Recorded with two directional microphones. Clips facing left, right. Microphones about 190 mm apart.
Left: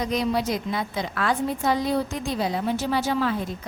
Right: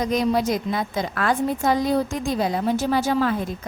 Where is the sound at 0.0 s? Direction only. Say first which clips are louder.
Right 3 dB; 45° right (ahead or behind).